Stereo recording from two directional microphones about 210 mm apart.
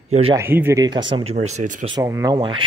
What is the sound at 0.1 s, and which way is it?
Speech, 25° right (ahead or behind).